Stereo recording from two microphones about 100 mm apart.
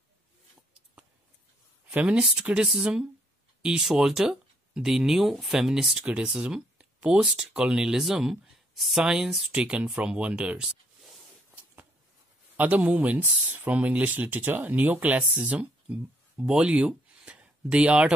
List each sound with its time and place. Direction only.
1.9 s speech: 10° right (ahead or behind)
12.5 s speech: 15° right (ahead or behind)